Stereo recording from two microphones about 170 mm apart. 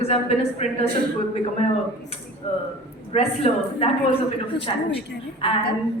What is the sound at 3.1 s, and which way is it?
A woman's voice, 35° left (ahead or behind).